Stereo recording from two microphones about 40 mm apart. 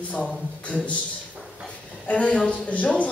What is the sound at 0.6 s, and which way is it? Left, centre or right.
Speech, left.